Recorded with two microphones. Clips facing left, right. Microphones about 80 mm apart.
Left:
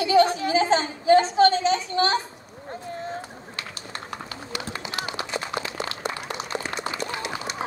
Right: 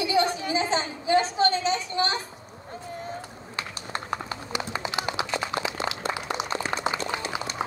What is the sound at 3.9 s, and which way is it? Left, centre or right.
Clip-clop, right.